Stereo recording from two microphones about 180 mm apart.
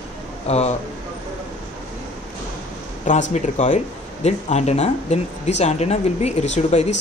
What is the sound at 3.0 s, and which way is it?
Speech, 40° left (ahead or behind).